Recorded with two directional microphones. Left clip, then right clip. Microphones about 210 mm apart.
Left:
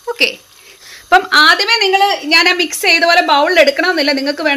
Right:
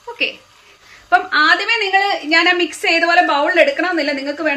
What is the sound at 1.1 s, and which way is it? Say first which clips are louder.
A woman's voice: left 4 dB; 55° left (ahead or behind).